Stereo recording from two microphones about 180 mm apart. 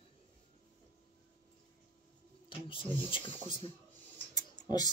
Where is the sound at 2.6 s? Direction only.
30° left (ahead or behind).